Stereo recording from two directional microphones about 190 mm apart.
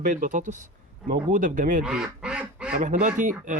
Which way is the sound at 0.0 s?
45° right (ahead or behind).